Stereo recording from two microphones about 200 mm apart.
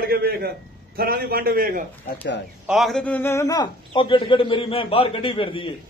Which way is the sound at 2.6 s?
Centre (ahead or behind).